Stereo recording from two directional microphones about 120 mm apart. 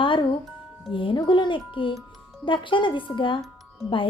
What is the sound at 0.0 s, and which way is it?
Music, 45° left (ahead or behind).